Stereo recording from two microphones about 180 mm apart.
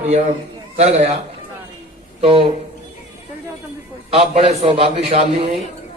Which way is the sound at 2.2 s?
30° right (ahead or behind).